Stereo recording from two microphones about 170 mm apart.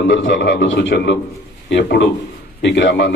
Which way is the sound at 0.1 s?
90° left.